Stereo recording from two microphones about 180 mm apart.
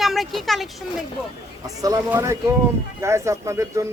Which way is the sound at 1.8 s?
20° right (ahead or behind).